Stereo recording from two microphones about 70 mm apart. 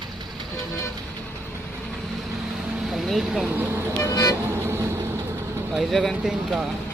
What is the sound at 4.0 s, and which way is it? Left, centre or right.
Vehicle, left.